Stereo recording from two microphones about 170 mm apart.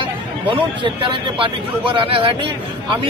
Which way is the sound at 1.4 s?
30° right (ahead or behind).